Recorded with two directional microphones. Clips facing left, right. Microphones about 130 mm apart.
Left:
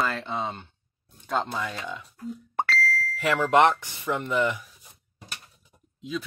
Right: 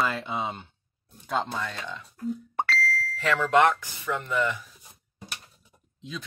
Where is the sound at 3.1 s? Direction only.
15° left (ahead or behind).